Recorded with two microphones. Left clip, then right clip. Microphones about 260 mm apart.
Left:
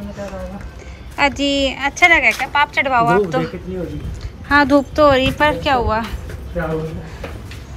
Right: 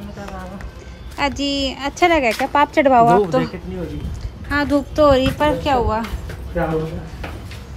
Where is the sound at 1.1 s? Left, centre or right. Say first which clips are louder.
Left 4 dB; centre.